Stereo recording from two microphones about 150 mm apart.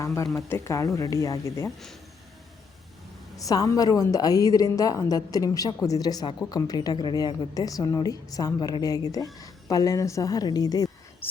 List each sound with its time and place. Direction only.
0.0 s a woman's voice: 20° left (ahead or behind)
3.3 s a woman's voice: 25° left (ahead or behind)
11.2 s speech: 15° left (ahead or behind)